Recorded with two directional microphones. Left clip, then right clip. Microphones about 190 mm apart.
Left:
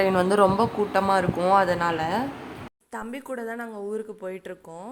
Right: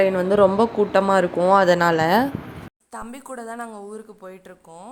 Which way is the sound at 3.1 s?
5° left (ahead or behind).